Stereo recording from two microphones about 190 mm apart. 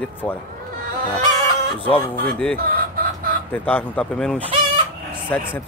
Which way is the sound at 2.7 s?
50° right (ahead or behind).